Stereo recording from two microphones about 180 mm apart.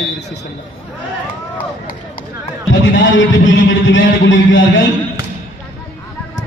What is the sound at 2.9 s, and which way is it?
A man's voice, 90° left.